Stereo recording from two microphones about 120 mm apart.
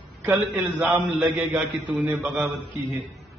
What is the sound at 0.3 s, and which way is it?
A man's voice, 15° right (ahead or behind).